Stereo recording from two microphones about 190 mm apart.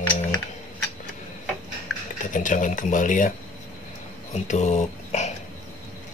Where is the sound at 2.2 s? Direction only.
45° left (ahead or behind).